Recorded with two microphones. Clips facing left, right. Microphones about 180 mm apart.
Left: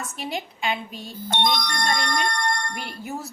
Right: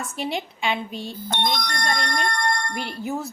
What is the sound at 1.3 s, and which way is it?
Speech, 50° right (ahead or behind).